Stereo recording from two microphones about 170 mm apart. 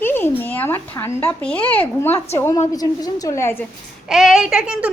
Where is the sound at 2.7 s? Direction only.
20° left (ahead or behind).